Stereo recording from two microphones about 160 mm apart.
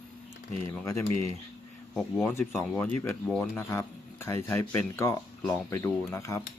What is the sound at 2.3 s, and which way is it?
Speech, 15° left (ahead or behind).